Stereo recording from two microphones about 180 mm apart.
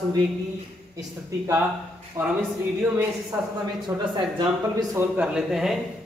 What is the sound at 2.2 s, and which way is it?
Speech, 10° right (ahead or behind).